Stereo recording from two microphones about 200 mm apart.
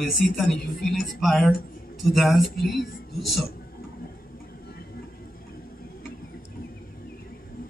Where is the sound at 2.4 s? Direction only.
50° left (ahead or behind).